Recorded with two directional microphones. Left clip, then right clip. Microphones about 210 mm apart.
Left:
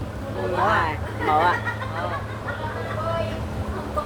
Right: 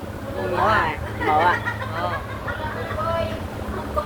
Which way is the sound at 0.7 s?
Centre (ahead or behind).